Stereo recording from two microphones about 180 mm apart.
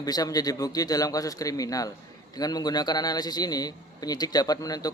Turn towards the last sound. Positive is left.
turn(degrees=20)  # may be behind; listen again after turning